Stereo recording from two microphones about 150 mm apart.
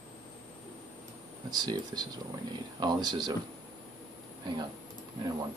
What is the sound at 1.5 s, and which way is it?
Speech, 30° right (ahead or behind).